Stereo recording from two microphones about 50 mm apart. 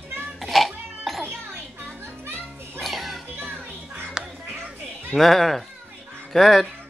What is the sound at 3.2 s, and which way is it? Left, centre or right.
Music, right.